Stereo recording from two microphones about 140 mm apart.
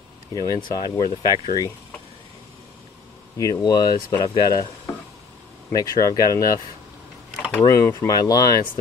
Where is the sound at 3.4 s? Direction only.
25° left (ahead or behind).